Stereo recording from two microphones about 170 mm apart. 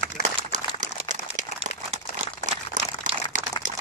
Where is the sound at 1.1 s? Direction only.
45° right (ahead or behind).